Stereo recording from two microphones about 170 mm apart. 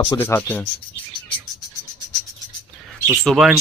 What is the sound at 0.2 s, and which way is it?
Speech, 10° left (ahead or behind).